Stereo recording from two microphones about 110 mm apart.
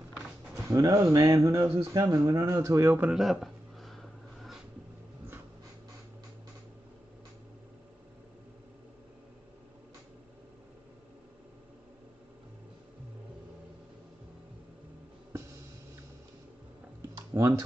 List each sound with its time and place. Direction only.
0.7 s speech: 35° right (ahead or behind)
3.0 s a sound: 5° right (ahead or behind)
17.3 s typing: 30° right (ahead or behind)